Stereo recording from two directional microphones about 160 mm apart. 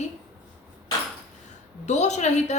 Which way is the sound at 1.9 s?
45° left (ahead or behind).